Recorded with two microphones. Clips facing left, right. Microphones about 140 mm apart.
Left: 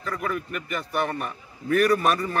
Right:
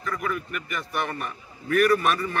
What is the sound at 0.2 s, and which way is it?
A man's voice, 30° left (ahead or behind).